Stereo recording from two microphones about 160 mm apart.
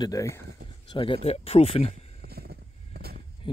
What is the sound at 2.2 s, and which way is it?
Vehicle, 75° right (ahead or behind).